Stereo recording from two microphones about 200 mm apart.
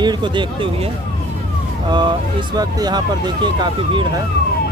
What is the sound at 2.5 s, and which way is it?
Speech, 20° right (ahead or behind).